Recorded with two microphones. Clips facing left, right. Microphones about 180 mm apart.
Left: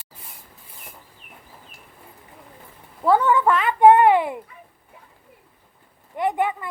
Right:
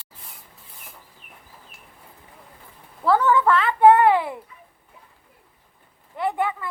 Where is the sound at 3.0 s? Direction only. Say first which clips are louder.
Left 1 dB; 15° left (ahead or behind).